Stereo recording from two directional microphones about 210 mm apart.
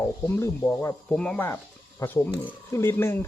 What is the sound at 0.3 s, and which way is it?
Speech, 10° left (ahead or behind).